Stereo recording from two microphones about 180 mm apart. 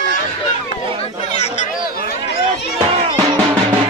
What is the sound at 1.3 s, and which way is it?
Chatter, 40° left (ahead or behind).